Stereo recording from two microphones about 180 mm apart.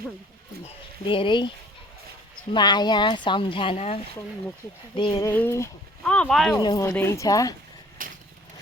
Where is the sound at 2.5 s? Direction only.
25° left (ahead or behind).